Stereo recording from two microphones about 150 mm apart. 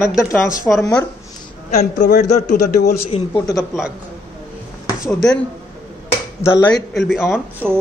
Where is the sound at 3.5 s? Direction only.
Centre (ahead or behind).